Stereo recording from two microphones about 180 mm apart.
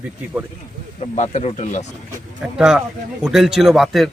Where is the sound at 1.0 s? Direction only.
35° left (ahead or behind).